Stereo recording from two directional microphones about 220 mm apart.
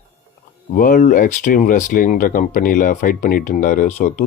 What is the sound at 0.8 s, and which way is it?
Speech, 40° left (ahead or behind).